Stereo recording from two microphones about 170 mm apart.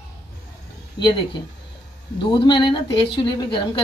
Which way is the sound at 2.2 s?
25° left (ahead or behind).